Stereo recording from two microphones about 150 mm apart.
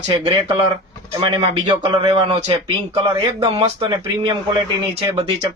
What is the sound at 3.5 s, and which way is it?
Speech, 35° right (ahead or behind).